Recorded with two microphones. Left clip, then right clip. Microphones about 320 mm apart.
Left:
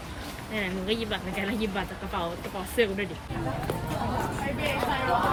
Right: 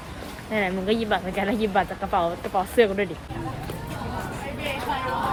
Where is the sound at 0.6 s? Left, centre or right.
Right.